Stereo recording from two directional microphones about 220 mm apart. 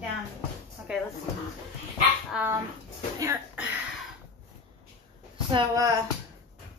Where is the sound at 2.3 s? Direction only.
10° right (ahead or behind).